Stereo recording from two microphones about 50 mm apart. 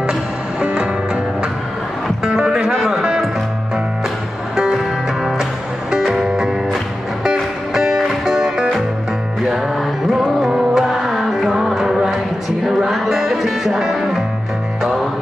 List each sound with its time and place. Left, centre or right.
0.7 s music: right
2.2 s music: centre
4.6 s music: centre
9.8 s music: centre